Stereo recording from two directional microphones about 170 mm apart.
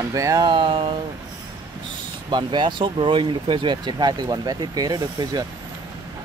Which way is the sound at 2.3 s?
25° right (ahead or behind).